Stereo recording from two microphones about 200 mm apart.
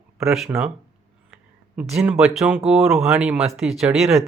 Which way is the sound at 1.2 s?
5° right (ahead or behind).